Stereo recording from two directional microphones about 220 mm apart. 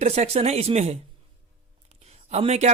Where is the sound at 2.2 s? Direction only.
30° right (ahead or behind).